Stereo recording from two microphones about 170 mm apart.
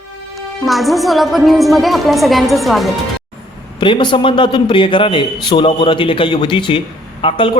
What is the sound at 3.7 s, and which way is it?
A man's voice, 30° left (ahead or behind).